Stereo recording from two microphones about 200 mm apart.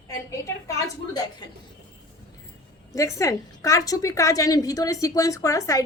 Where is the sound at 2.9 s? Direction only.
15° left (ahead or behind).